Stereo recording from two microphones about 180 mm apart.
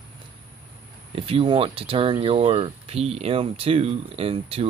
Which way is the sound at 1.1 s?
30° right (ahead or behind).